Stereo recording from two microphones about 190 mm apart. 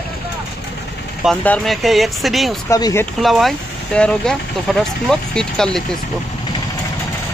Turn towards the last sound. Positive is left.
turn(degrees=5)  # may be behind; listen again after turning